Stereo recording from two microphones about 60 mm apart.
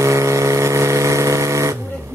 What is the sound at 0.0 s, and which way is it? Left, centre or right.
Vehicle, right.